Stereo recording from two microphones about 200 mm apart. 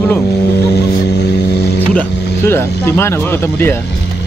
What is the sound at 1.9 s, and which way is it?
Speech, 10° left (ahead or behind).